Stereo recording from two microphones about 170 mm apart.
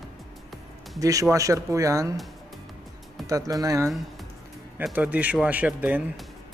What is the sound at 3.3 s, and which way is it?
Speech, 20° right (ahead or behind).